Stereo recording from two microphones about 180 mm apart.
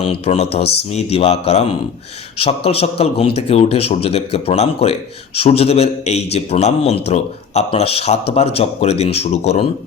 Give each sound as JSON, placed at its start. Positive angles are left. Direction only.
{"t": 0.0, "sound": "a man's voice", "side_deg": 35}